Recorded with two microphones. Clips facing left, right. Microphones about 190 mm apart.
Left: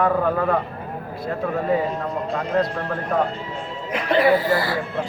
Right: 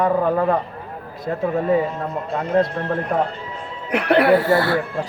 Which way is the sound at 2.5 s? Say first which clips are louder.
Right 5 dB; 25° right (ahead or behind).